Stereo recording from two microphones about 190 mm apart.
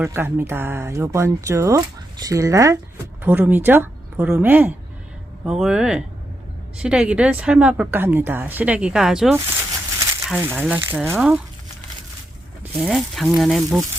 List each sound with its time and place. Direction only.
0.0 s a woman's voice: 15° right (ahead or behind)
12.8 s speech: centre (ahead or behind)